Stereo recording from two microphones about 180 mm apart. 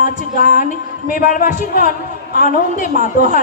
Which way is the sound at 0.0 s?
50° left (ahead or behind).